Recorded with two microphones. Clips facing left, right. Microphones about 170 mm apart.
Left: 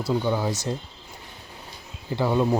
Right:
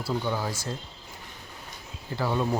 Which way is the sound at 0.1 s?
20° left (ahead or behind).